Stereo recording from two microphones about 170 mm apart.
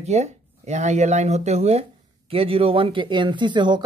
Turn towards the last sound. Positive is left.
turn(degrees=-25)  # may be behind; listen again after turning